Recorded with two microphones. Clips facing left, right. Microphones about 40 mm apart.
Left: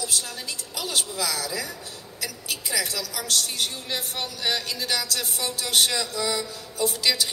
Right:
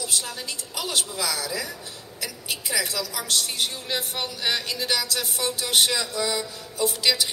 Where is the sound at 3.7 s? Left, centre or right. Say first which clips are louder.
Right 2 dB; right.